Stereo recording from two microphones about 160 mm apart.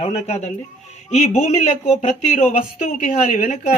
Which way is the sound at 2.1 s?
50° left (ahead or behind).